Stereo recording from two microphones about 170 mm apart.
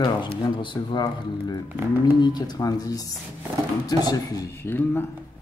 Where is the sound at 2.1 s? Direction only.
25° left (ahead or behind).